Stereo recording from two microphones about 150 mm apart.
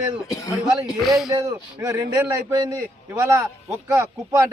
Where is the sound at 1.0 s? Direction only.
Centre (ahead or behind).